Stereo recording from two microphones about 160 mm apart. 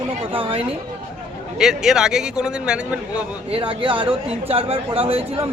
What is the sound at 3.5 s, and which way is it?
Speech, 35° right (ahead or behind).